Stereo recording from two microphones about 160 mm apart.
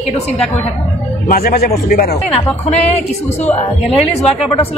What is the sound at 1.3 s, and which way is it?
Speech, 70° left (ahead or behind).